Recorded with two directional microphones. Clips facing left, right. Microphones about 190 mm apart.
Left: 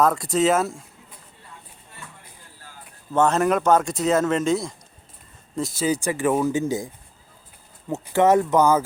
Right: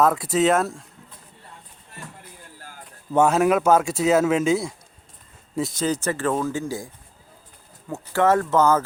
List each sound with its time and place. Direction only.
0.0 s speech: 5° right (ahead or behind)
3.1 s speech: 10° right (ahead or behind); by 8.8 s 15° left (ahead or behind)